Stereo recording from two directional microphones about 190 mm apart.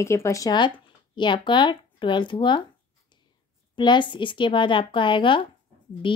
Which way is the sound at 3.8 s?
25° left (ahead or behind).